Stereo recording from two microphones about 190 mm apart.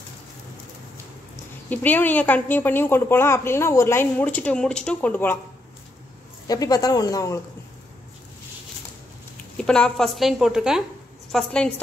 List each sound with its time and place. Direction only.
1.7 s a woman's voice: 10° left (ahead or behind)
6.4 s speech: 20° left (ahead or behind)
9.6 s a woman's voice: 5° left (ahead or behind)